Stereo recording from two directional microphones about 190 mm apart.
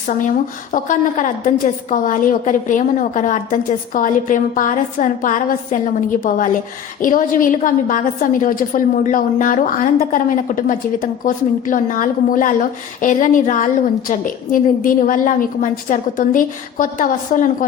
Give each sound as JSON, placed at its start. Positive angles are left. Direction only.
{"t": 0.7, "sound": "a woman's voice", "side_deg": 45}